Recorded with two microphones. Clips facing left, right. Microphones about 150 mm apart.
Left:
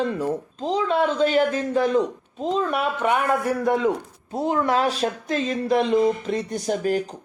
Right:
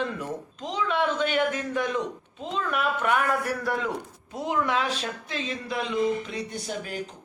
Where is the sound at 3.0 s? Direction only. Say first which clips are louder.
Left 5 dB; 20° left (ahead or behind).